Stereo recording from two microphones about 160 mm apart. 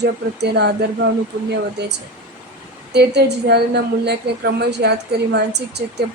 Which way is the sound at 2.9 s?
90° right.